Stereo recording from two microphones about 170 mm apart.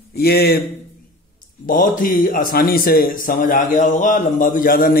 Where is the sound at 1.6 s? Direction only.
50° left (ahead or behind).